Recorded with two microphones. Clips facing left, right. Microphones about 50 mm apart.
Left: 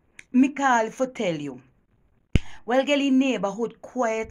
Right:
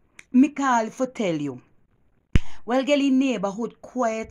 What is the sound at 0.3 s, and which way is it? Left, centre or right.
A woman's voice, left.